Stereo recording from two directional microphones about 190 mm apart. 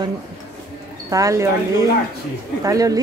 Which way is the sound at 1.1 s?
15° right (ahead or behind).